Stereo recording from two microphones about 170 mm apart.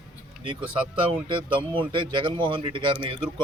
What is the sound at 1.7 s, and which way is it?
Speech, 30° right (ahead or behind).